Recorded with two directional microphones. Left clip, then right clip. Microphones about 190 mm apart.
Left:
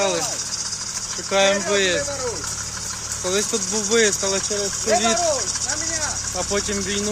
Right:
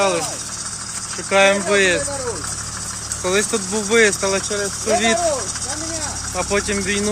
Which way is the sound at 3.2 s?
Centre (ahead or behind).